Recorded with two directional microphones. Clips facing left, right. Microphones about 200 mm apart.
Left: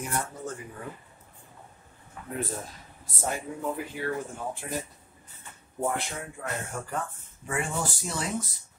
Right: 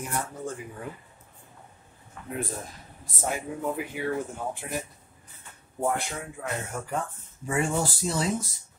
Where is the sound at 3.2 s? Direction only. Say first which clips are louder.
Right 1 dB; 10° right (ahead or behind).